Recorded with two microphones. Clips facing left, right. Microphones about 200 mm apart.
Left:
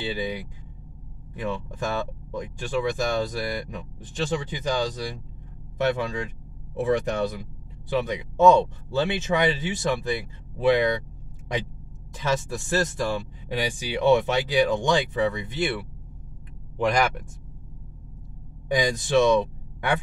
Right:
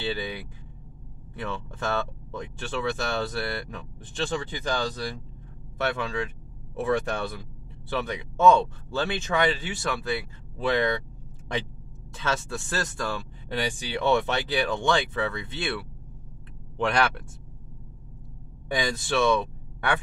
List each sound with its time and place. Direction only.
0.1 s speech: 15° left (ahead or behind)
12.2 s speech: 15° left (ahead or behind)
16.7 s speech: 10° left (ahead or behind)
18.7 s speech: 15° left (ahead or behind)